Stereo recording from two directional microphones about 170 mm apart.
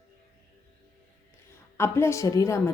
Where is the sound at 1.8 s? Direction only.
15° left (ahead or behind).